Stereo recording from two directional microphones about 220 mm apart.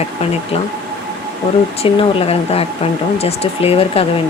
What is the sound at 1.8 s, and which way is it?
Speech, 25° left (ahead or behind).